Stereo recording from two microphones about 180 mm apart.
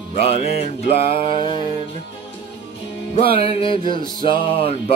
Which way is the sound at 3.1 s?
30° left (ahead or behind).